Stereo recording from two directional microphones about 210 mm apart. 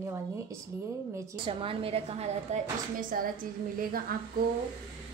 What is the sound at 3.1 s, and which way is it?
Speech, 40° right (ahead or behind).